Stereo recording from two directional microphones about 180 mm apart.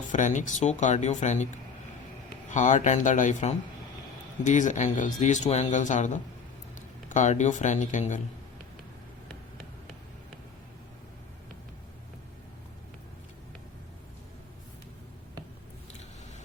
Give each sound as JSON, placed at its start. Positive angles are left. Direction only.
{"t": 0.1, "sound": "speech", "side_deg": 45}
{"t": 2.5, "sound": "a man's voice", "side_deg": 45}